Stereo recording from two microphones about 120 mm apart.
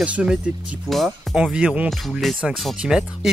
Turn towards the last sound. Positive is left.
turn(degrees=-5)  # may be behind; listen again after turning